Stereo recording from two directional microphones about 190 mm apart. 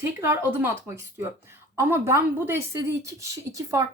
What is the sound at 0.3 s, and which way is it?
Speech, 15° right (ahead or behind).